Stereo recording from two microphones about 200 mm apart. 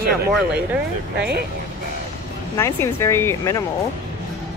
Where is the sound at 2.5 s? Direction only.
15° left (ahead or behind).